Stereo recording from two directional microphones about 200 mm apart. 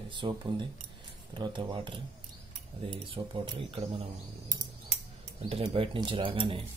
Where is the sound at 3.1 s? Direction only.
25° right (ahead or behind).